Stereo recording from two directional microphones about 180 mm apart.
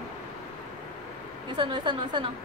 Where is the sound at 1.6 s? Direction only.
25° right (ahead or behind).